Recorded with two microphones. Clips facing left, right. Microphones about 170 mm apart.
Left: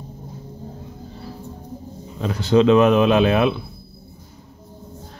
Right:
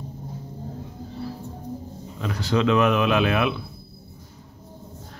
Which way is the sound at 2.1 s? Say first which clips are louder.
Left 7 dB; 30° left (ahead or behind).